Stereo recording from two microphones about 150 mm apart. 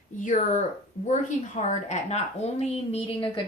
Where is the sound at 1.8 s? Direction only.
50° left (ahead or behind).